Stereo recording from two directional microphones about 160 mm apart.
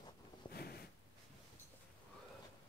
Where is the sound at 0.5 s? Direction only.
80° left.